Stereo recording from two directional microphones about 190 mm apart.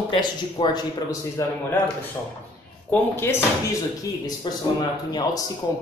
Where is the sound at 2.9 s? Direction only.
10° left (ahead or behind).